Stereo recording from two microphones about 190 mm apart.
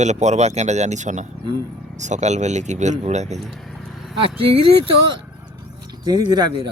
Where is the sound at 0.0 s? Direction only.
35° right (ahead or behind).